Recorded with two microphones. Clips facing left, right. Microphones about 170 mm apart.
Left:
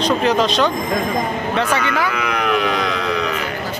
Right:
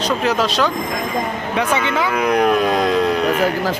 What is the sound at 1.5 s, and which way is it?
Speech, 20° right (ahead or behind).